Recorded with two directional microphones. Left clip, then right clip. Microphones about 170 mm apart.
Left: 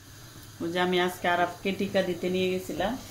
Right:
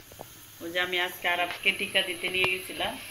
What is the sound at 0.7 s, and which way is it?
Speech, 70° left (ahead or behind).